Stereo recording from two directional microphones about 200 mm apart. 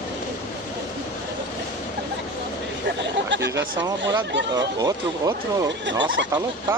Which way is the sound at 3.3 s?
60° right (ahead or behind).